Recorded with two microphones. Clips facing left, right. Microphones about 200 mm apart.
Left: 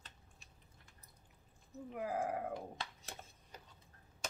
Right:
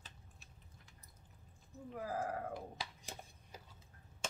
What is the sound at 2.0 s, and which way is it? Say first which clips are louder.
Speech: left 2 dB; 15° left (ahead or behind).